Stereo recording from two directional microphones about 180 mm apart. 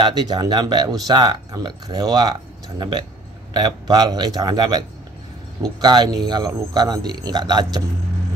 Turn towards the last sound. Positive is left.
turn(degrees=-25)  # may be behind; listen again after turning